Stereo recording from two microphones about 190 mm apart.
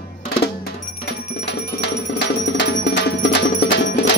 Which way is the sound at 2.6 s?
65° left (ahead or behind).